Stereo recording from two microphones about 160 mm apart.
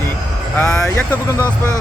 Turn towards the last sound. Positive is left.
turn(degrees=10)  # may be behind; listen again after turning